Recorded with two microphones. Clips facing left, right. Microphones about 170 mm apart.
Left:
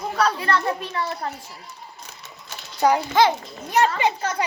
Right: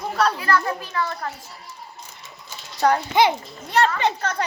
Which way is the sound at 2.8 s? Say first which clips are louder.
Even; 10° left (ahead or behind).